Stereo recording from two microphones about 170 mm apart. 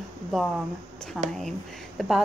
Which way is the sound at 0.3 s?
Centre (ahead or behind).